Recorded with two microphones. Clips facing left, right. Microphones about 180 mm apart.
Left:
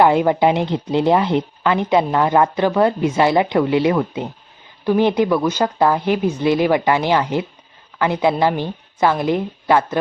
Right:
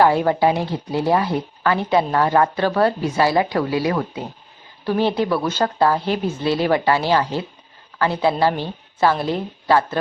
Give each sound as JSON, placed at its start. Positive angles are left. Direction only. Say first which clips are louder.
{"t": 0.0, "sound": "a woman's voice", "louder": "left 2 dB", "side_deg": 20}